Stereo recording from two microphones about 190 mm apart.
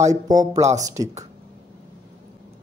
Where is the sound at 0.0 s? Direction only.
20° right (ahead or behind).